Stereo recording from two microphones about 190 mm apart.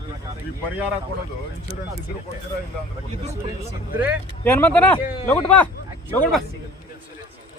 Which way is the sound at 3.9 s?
10° right (ahead or behind).